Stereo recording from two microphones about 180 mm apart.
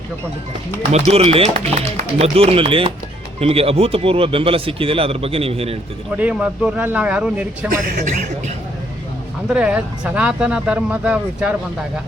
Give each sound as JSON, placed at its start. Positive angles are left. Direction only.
{"t": 0.9, "sound": "speech", "side_deg": -35}
{"t": 6.1, "sound": "speech", "side_deg": -5}
{"t": 7.7, "sound": "a man's voice", "side_deg": -50}
{"t": 9.5, "sound": "speech", "side_deg": -5}